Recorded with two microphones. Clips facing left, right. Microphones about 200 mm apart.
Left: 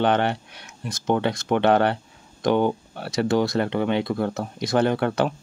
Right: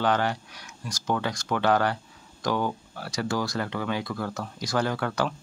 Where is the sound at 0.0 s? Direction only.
25° left (ahead or behind).